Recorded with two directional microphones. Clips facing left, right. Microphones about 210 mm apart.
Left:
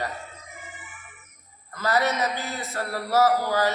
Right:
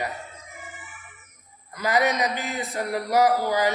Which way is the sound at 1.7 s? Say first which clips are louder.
Right 1 dB; 15° right (ahead or behind).